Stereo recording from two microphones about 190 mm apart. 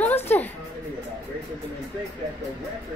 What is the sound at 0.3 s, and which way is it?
Music, 10° left (ahead or behind).